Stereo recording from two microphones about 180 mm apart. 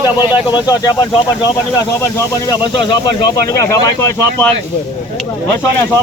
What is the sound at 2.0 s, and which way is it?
Speech, 15° left (ahead or behind).